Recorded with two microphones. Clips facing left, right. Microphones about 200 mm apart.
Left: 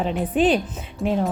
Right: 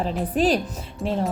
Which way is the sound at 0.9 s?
Centre (ahead or behind).